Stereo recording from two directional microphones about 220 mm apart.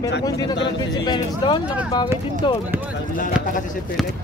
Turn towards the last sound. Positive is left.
turn(degrees=35)  # may be behind; listen again after turning